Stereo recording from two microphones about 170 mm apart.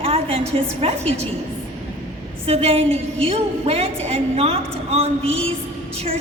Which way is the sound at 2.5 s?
35° right (ahead or behind).